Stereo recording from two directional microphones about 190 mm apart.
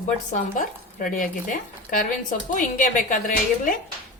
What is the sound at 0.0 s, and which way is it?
Speech, 45° left (ahead or behind).